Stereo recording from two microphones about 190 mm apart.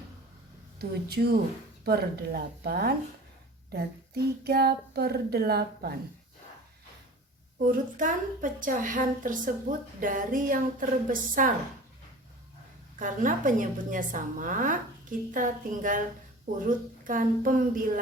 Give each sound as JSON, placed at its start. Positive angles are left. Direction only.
{"t": 0.8, "sound": "speech", "side_deg": -55}
{"t": 7.6, "sound": "a woman's voice", "side_deg": -45}
{"t": 13.0, "sound": "a woman's voice", "side_deg": -45}